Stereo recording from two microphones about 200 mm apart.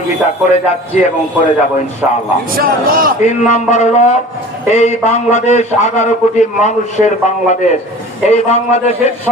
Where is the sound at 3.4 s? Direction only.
35° left (ahead or behind).